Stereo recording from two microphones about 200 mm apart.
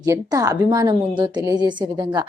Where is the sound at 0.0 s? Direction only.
15° right (ahead or behind).